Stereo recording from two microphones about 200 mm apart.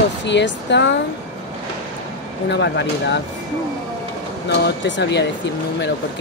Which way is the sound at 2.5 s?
60° left (ahead or behind).